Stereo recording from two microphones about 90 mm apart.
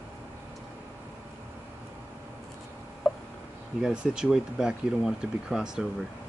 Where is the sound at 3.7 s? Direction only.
5° right (ahead or behind).